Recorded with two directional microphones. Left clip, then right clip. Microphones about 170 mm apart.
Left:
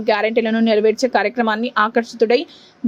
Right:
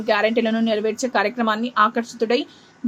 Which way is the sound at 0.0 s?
40° left (ahead or behind).